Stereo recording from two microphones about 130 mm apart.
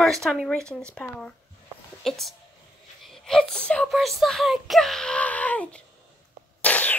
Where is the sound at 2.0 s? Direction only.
Centre (ahead or behind).